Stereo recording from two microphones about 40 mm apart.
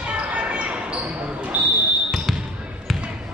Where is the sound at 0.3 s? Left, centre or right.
Right.